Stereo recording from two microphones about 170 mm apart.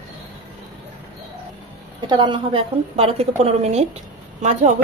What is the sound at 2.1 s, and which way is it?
A woman's voice, 25° right (ahead or behind).